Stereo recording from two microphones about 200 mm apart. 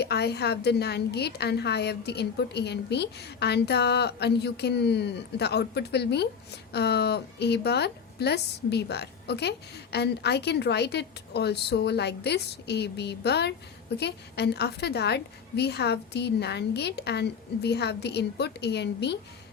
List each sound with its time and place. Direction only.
0.0 s a woman's voice: 55° left (ahead or behind)